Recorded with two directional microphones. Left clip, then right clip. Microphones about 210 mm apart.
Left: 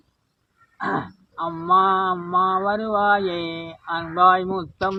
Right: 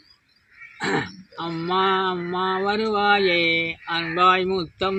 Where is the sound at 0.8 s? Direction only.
15° right (ahead or behind).